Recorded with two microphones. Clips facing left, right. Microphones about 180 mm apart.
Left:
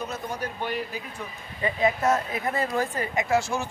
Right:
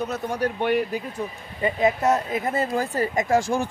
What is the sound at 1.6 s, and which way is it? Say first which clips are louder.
Speech: right 3 dB; 20° right (ahead or behind).